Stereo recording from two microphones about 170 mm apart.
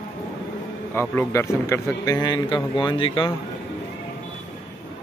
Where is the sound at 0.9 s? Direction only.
15° left (ahead or behind); by 3.3 s 30° left (ahead or behind).